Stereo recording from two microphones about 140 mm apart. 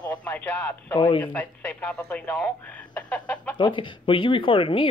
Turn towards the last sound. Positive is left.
turn(degrees=40)  # may be behind; listen again after turning